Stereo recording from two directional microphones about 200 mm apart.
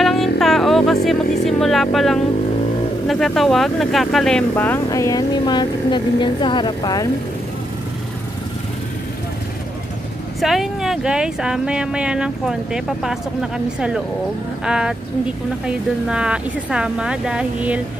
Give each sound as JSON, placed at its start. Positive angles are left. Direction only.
{"t": 0.0, "sound": "music", "side_deg": 0}
{"t": 3.1, "sound": "speech", "side_deg": 0}
{"t": 10.4, "sound": "speech", "side_deg": 0}